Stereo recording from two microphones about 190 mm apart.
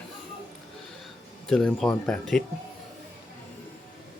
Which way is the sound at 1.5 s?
Centre (ahead or behind).